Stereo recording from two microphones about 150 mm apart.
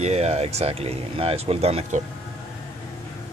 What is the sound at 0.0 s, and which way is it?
Speech, 45° right (ahead or behind).